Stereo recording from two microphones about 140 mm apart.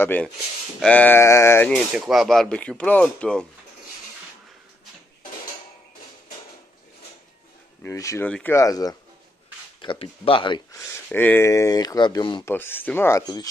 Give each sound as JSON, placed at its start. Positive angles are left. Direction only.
{"t": 0.0, "sound": "sheep", "side_deg": 15}
{"t": 1.7, "sound": "speech", "side_deg": 0}
{"t": 2.9, "sound": "sheep", "side_deg": 10}
{"t": 7.8, "sound": "speech", "side_deg": 20}
{"t": 8.3, "sound": "sheep", "side_deg": 5}
{"t": 8.5, "sound": "speech", "side_deg": 25}
{"t": 9.8, "sound": "speech", "side_deg": 40}
{"t": 11.1, "sound": "speech", "side_deg": 15}
{"t": 12.4, "sound": "sheep", "side_deg": 15}